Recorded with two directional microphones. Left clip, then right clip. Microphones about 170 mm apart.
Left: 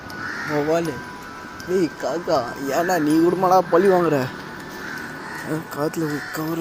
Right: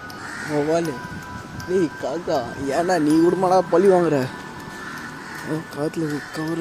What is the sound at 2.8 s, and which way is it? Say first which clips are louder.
Speech: right 1 dB; 35° right (ahead or behind).